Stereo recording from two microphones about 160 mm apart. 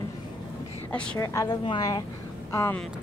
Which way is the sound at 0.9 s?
5° left (ahead or behind).